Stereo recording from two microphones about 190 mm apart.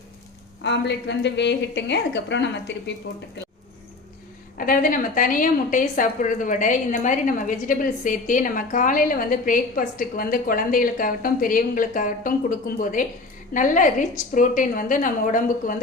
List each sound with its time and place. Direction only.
0.6 s a woman's voice: 65° left (ahead or behind)
4.5 s a woman's voice: 45° left (ahead or behind)